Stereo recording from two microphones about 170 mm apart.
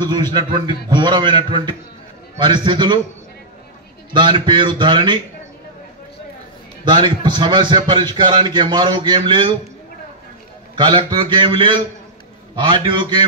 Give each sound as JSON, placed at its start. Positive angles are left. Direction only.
{"t": 0.0, "sound": "a man's voice", "side_deg": -25}
{"t": 4.1, "sound": "a man's voice", "side_deg": -25}
{"t": 6.8, "sound": "a man's voice", "side_deg": -25}
{"t": 10.8, "sound": "a man's voice", "side_deg": -25}